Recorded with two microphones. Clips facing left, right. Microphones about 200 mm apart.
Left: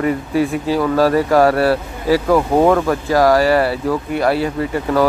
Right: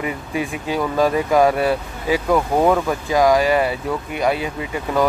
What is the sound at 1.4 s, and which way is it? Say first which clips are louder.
Speech: left 1 dB; 15° right (ahead or behind).